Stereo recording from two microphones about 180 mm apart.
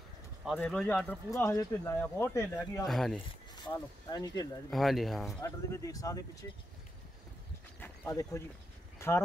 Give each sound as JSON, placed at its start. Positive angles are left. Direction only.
{"t": 0.5, "sound": "speech", "side_deg": 5}
{"t": 2.9, "sound": "speech", "side_deg": 0}
{"t": 3.2, "sound": "speech", "side_deg": 25}
{"t": 4.6, "sound": "speech", "side_deg": 0}
{"t": 5.4, "sound": "speech", "side_deg": 15}
{"t": 7.8, "sound": "speech", "side_deg": 15}
{"t": 8.9, "sound": "a sound", "side_deg": 15}